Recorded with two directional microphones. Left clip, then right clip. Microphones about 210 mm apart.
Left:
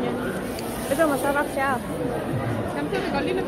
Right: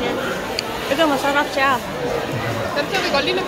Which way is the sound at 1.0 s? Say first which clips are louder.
Right 4 dB; 20° right (ahead or behind).